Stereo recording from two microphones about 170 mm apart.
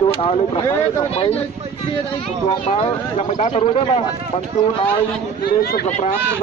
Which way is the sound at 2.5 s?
35° left (ahead or behind).